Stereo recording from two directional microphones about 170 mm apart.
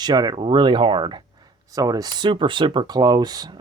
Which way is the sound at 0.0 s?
25° right (ahead or behind).